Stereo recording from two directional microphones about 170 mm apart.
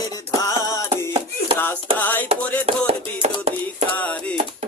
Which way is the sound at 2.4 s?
10° left (ahead or behind).